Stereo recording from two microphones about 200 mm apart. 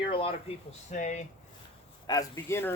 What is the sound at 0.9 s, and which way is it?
Speech, 35° left (ahead or behind).